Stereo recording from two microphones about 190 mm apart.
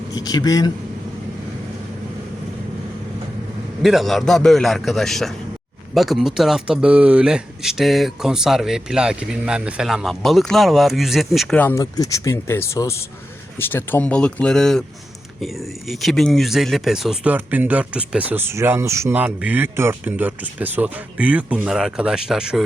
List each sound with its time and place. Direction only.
0.1 s speech: 20° left (ahead or behind)
3.8 s speech: centre (ahead or behind)